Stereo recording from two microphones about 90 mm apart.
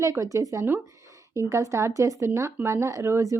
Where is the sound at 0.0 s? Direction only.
35° right (ahead or behind).